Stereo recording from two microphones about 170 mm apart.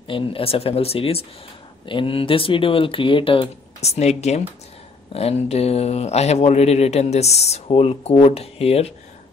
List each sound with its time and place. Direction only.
0.1 s speech: 35° left (ahead or behind)